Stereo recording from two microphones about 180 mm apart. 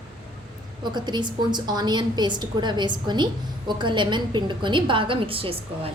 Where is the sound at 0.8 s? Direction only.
25° right (ahead or behind).